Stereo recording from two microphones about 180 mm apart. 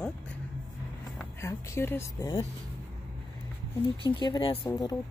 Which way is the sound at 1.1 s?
15° left (ahead or behind).